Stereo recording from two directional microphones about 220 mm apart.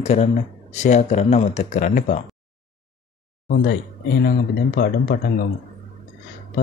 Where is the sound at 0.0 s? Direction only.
30° left (ahead or behind).